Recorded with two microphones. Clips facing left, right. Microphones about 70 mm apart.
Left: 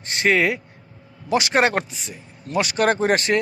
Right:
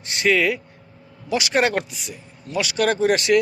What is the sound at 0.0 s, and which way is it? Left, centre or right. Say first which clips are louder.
A man's voice: even; left.